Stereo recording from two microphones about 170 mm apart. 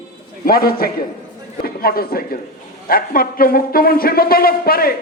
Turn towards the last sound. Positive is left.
turn(degrees=60)  # may be behind; listen again after turning